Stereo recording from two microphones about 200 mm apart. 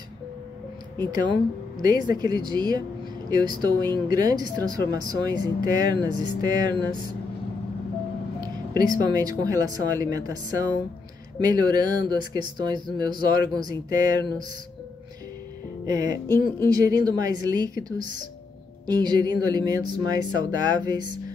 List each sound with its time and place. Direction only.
1.0 s speech: 20° right (ahead or behind)
8.4 s speech: 20° right (ahead or behind)
15.9 s speech: 20° right (ahead or behind)